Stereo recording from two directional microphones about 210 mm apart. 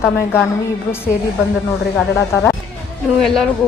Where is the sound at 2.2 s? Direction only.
10° left (ahead or behind).